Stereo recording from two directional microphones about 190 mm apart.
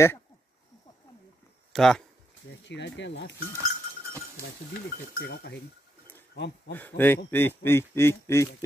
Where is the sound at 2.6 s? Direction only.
70° left (ahead or behind).